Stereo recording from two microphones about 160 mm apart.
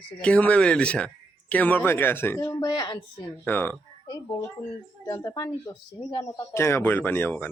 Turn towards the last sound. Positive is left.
turn(degrees=10)  # may be behind; listen again after turning